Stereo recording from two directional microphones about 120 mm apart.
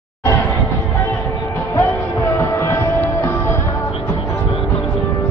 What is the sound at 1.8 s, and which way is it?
Music, 20° left (ahead or behind).